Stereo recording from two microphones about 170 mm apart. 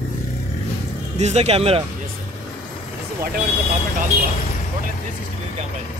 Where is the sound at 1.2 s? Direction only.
40° right (ahead or behind).